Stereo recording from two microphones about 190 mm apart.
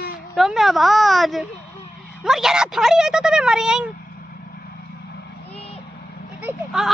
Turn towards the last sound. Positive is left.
turn(degrees=-5)  # may be behind; listen again after turning